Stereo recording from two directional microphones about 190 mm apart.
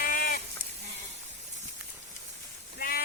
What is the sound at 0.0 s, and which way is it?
Sheep, 50° left (ahead or behind).